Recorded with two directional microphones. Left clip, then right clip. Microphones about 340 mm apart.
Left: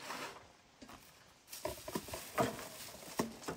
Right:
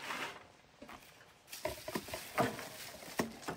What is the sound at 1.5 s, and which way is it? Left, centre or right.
Patter, centre.